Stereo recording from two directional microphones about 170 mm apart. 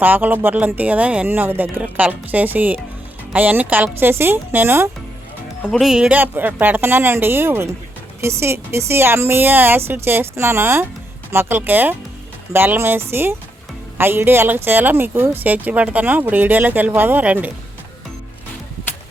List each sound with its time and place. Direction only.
0.0 s speech: 10° right (ahead or behind)
5.6 s speech: 5° left (ahead or behind)
5.9 s speech: 5° right (ahead or behind)